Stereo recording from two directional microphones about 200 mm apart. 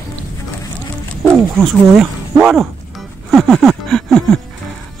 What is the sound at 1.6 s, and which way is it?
Speech, centre (ahead or behind).